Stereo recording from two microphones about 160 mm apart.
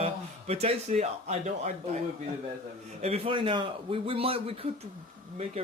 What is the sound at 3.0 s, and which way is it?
Speech, 40° right (ahead or behind).